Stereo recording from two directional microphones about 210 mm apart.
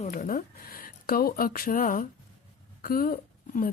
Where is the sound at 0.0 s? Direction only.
40° left (ahead or behind).